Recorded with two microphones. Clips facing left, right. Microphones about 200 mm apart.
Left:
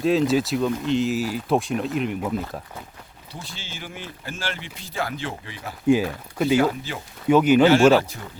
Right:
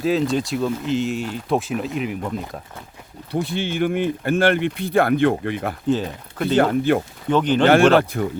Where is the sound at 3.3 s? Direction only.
60° right (ahead or behind).